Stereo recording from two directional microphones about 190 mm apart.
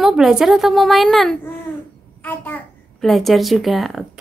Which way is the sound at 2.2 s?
10° left (ahead or behind).